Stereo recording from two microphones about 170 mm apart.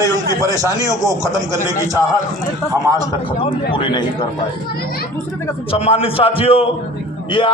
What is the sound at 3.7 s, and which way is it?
Speech, 25° left (ahead or behind).